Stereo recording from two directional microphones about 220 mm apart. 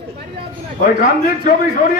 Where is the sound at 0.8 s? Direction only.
45° left (ahead or behind).